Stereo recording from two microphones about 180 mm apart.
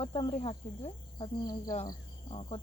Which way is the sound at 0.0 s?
30° left (ahead or behind).